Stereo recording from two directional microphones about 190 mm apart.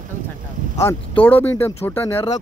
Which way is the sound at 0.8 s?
10° left (ahead or behind).